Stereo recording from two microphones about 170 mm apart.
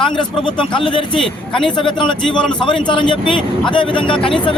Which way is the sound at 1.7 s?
30° left (ahead or behind).